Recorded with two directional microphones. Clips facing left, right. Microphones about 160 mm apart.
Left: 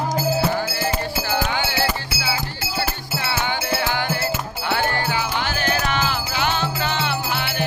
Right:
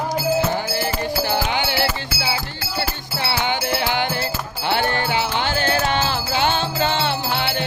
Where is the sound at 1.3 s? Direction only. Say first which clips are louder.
Right 1 dB; 20° right (ahead or behind).